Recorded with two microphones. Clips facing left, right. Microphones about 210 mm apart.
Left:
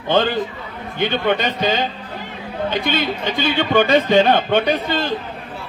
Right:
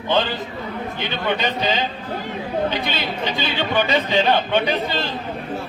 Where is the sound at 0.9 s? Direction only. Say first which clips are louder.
Left 7 dB; 55° left (ahead or behind).